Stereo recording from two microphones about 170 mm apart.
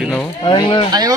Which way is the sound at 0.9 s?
25° right (ahead or behind).